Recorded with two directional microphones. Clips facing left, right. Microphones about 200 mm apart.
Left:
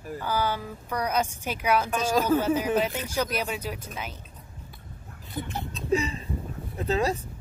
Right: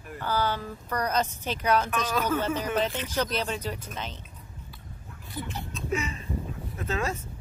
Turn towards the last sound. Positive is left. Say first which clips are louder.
# left 5 dB
turn(degrees=35)  # may be behind; listen again after turning